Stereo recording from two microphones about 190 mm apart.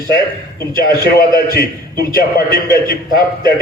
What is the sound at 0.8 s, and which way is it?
Speech, 55° left (ahead or behind).